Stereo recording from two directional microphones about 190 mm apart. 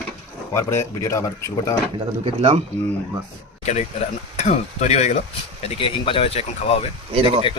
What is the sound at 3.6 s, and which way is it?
Speech, 35° left (ahead or behind).